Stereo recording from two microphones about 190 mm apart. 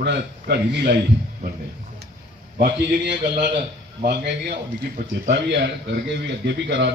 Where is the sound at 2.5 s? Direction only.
60° right (ahead or behind).